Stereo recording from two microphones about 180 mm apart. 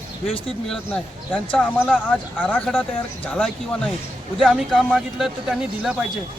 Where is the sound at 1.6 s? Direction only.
5° right (ahead or behind).